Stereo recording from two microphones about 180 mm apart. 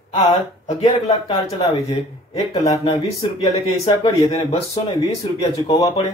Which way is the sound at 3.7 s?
35° left (ahead or behind).